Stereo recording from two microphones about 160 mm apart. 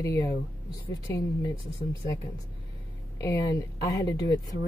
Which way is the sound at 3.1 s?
20° left (ahead or behind).